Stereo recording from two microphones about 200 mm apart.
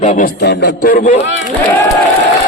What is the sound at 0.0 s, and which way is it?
Speech, 35° left (ahead or behind).